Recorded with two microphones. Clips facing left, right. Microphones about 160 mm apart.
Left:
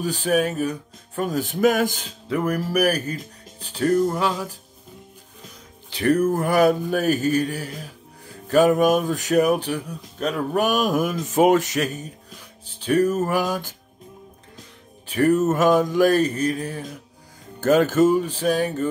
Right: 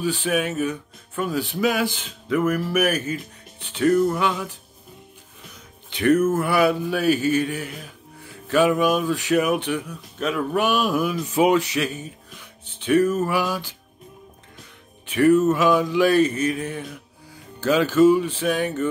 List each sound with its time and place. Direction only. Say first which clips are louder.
0.0 s speech: left 2 dB; 40° left (ahead or behind)
5.9 s speech: right 1 dB; 35° left (ahead or behind)
15.0 s speech: right 2 dB; 40° left (ahead or behind)
17.6 s speech: even; 45° left (ahead or behind)